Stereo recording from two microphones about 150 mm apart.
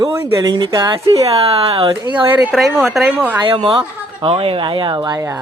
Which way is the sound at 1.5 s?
40° right (ahead or behind).